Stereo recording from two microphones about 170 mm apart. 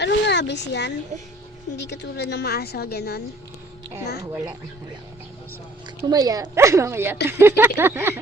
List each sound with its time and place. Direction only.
0.0 s a sound: 90° left
1.7 s a woman's voice: 80° left
6.1 s speech: 20° right (ahead or behind)